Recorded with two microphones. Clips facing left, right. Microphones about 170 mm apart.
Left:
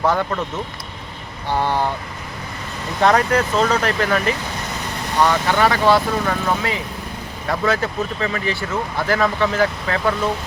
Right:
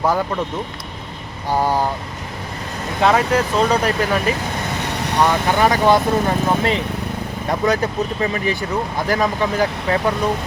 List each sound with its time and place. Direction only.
0.0 s speech: 10° right (ahead or behind)
1.5 s speech: 10° right (ahead or behind)
3.0 s speech: 5° right (ahead or behind)
5.2 s speech: 15° right (ahead or behind)